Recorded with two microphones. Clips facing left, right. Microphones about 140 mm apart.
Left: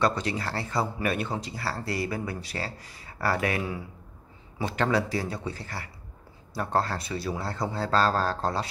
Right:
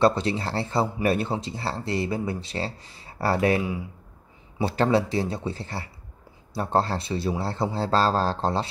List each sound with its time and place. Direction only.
0.0 s speech: 30° right (ahead or behind)